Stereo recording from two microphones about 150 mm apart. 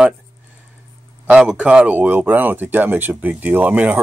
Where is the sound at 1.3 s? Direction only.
5° right (ahead or behind).